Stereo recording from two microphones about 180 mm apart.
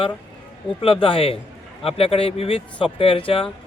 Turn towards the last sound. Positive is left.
turn(degrees=30)  # may be behind; listen again after turning